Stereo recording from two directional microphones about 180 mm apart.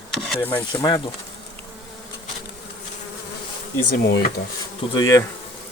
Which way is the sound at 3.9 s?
60° left (ahead or behind).